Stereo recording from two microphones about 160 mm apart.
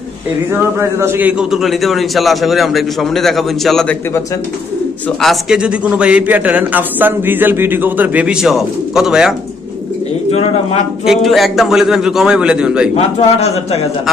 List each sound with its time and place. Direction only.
0.5 s a man's voice: 15° right (ahead or behind); by 3.9 s centre (ahead or behind)
5.2 s a man's voice: centre (ahead or behind)
10.3 s a man's voice: 35° left (ahead or behind)
11.1 s a man's voice: centre (ahead or behind)
12.9 s a man's voice: 40° left (ahead or behind)